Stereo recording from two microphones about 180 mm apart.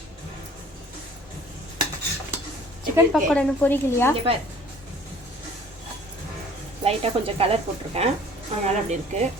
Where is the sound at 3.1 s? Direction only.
10° left (ahead or behind).